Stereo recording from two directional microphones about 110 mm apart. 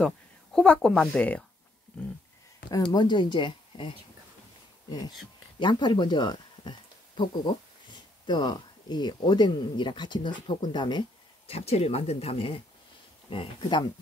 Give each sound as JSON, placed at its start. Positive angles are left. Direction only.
{"t": 0.0, "sound": "speech", "side_deg": 5}
{"t": 2.9, "sound": "speech", "side_deg": 40}
{"t": 5.6, "sound": "speech", "side_deg": 45}
{"t": 11.4, "sound": "speech", "side_deg": 65}